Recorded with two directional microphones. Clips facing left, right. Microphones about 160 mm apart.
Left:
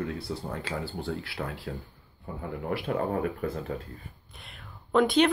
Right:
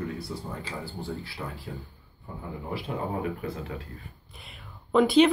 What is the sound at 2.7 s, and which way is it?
Speech, 65° left (ahead or behind).